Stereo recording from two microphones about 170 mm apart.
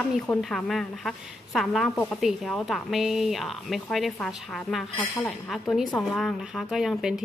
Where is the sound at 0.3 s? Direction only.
Centre (ahead or behind).